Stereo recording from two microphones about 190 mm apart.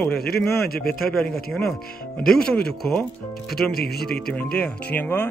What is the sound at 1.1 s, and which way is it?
Speech, centre (ahead or behind).